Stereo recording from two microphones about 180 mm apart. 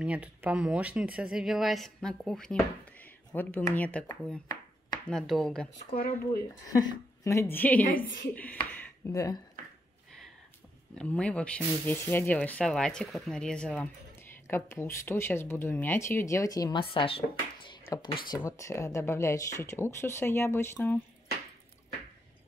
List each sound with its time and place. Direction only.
0.0 s speech: 5° right (ahead or behind)
6.7 s speech: 20° left (ahead or behind)
11.0 s speech: 5° left (ahead or behind)